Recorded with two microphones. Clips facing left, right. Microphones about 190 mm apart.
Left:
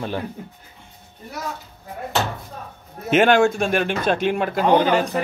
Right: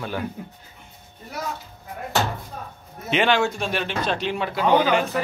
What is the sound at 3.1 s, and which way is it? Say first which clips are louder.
Speech: left 5 dB; 50° left (ahead or behind).